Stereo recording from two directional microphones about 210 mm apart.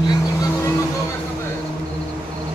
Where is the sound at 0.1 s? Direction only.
15° left (ahead or behind).